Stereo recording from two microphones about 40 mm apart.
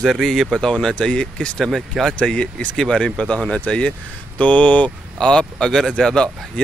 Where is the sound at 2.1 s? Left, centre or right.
Left.